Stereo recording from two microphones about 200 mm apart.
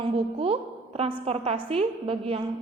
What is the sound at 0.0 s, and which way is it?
A woman's voice, 30° right (ahead or behind).